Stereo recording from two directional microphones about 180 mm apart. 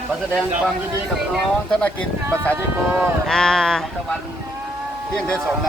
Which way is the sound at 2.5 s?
15° right (ahead or behind).